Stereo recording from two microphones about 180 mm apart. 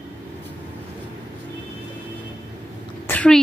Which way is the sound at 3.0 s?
5° left (ahead or behind).